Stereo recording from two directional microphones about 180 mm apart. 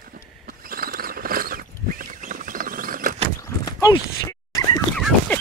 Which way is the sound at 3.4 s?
20° left (ahead or behind).